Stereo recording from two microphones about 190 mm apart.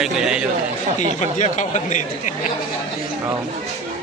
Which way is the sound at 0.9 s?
40° left (ahead or behind).